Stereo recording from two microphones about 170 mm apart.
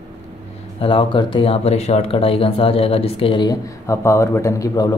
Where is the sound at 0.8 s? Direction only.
30° left (ahead or behind).